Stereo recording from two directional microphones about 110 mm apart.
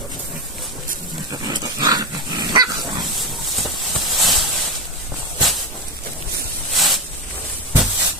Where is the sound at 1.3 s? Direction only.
40° right (ahead or behind).